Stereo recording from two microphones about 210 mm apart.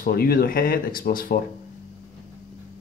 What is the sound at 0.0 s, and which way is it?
Speech, 45° left (ahead or behind).